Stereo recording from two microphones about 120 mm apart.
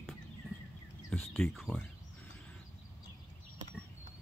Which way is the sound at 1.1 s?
15° left (ahead or behind).